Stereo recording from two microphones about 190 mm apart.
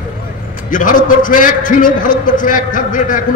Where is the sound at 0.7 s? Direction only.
45° left (ahead or behind).